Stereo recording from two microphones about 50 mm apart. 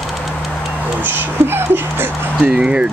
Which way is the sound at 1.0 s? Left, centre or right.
Right.